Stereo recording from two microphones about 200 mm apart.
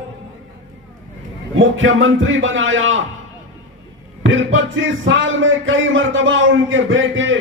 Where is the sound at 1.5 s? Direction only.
75° right (ahead or behind).